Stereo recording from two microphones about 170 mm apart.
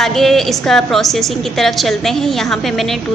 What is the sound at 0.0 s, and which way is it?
A woman's voice, centre (ahead or behind).